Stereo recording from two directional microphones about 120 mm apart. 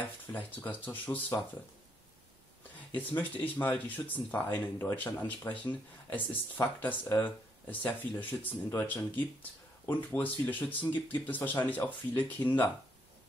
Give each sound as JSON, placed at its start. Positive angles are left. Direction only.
{"t": 0.3, "sound": "speech", "side_deg": 15}
{"t": 3.0, "sound": "speech", "side_deg": 15}